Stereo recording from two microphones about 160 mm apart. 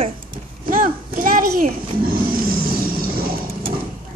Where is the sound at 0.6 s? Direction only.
60° right (ahead or behind).